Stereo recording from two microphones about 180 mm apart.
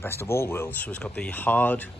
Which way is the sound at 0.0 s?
15° left (ahead or behind).